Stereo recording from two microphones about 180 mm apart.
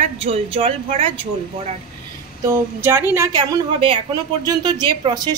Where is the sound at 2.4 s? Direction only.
15° right (ahead or behind).